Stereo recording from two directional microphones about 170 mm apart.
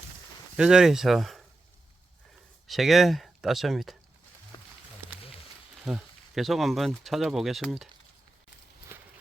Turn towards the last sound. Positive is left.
turn(degrees=0)  # may be behind; listen again after turning